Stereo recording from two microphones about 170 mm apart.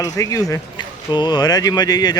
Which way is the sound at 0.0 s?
20° left (ahead or behind).